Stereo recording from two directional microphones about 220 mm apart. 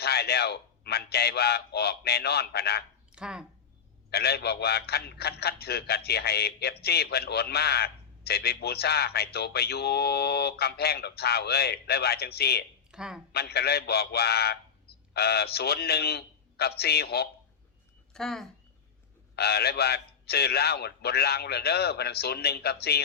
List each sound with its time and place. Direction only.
0.0 s a man's voice: 45° left (ahead or behind)
3.1 s speech: 5° right (ahead or behind)
4.1 s a man's voice: 45° left (ahead or behind)
12.9 s a woman's voice: 5° right (ahead or behind)
13.3 s a man's voice: 45° left (ahead or behind)
18.1 s speech: centre (ahead or behind)
19.4 s a man's voice: 45° left (ahead or behind)